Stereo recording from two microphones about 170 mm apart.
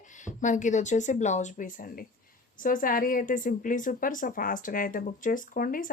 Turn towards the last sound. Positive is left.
turn(degrees=55)  # may be behind; listen again after turning